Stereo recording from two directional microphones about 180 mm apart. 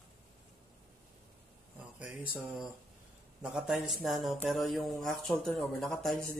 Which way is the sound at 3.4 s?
5° right (ahead or behind).